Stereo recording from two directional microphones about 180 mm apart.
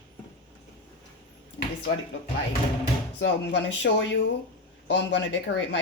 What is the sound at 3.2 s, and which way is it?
Speech, 90° left.